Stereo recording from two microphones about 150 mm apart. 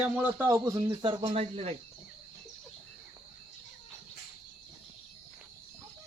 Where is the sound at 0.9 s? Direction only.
30° right (ahead or behind).